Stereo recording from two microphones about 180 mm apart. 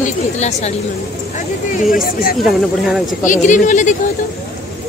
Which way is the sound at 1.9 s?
55° left (ahead or behind).